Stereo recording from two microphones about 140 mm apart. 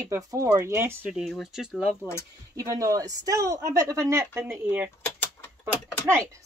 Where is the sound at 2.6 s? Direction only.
25° right (ahead or behind).